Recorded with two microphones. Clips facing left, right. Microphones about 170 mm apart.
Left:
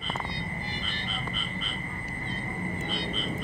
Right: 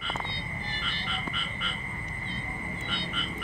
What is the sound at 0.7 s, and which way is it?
Frog, 65° right (ahead or behind).